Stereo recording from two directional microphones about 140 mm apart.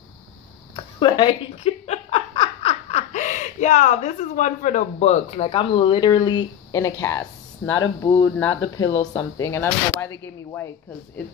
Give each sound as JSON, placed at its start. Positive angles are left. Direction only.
{"t": 0.7, "sound": "speech", "side_deg": 35}
{"t": 1.9, "sound": "snicker", "side_deg": 45}
{"t": 5.4, "sound": "speech", "side_deg": 40}
{"t": 9.5, "sound": "speech", "side_deg": 20}